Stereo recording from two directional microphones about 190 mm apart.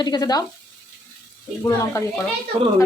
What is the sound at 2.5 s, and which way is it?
Speech, 30° right (ahead or behind).